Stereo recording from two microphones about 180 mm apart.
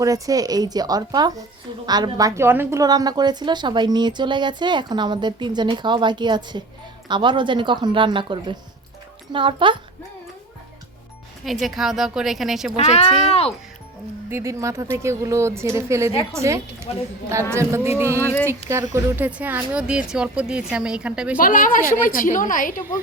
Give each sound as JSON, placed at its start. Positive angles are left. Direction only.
{"t": 0.0, "sound": "a woman's voice", "side_deg": -20}
{"t": 11.4, "sound": "speech", "side_deg": 0}
{"t": 12.7, "sound": "speech", "side_deg": 35}
{"t": 14.3, "sound": "speech", "side_deg": -15}
{"t": 18.2, "sound": "speech", "side_deg": 10}
{"t": 18.9, "sound": "speech", "side_deg": -10}
{"t": 21.3, "sound": "a woman's voice", "side_deg": 50}